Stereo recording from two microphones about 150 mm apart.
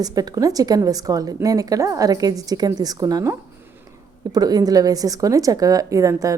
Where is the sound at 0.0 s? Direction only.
25° right (ahead or behind).